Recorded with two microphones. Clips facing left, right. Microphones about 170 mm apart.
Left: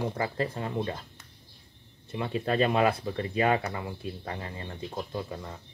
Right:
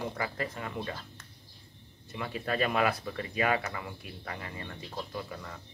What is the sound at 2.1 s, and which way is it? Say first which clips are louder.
Speech: left 5 dB; 25° left (ahead or behind).